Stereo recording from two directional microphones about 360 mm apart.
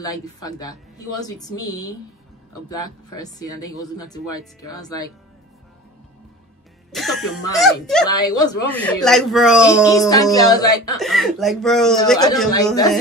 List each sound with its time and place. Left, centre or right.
0.0 s speech: centre
6.9 s speech: centre
9.8 s speech: centre